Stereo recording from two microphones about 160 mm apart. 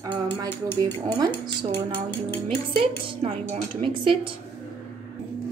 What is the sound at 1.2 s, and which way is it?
Speech, 25° right (ahead or behind).